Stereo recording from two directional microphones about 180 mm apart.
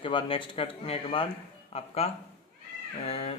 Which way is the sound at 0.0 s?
25° left (ahead or behind).